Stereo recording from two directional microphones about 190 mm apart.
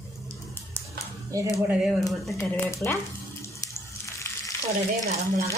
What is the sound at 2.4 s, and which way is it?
Speech, 15° left (ahead or behind).